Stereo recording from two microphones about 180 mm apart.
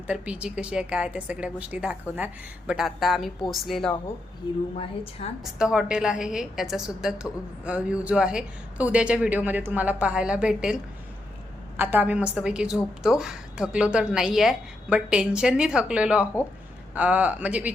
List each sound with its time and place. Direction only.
0.1 s a woman's voice: 5° right (ahead or behind)
5.2 s a woman's voice: 35° left (ahead or behind)
5.5 s a woman's voice: 5° right (ahead or behind)
11.8 s a woman's voice: 10° right (ahead or behind)